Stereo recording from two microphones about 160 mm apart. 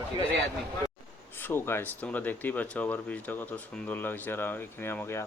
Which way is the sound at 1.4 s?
15° left (ahead or behind).